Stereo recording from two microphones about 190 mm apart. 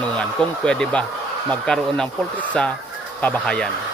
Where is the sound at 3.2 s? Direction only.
5° left (ahead or behind).